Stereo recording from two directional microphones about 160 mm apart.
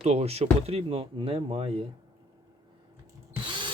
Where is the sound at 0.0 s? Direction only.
40° right (ahead or behind).